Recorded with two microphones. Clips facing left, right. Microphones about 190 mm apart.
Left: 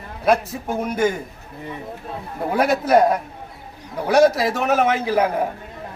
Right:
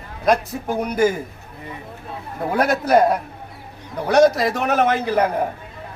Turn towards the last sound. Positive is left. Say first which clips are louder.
# even
turn(degrees=5)  # may be behind; listen again after turning